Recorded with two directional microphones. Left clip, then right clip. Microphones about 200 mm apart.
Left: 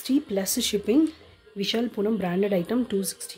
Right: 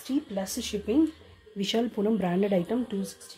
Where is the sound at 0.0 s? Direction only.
50° left (ahead or behind); by 1.1 s 35° left (ahead or behind).